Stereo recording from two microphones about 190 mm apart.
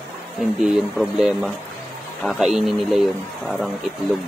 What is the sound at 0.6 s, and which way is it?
Speech, centre (ahead or behind).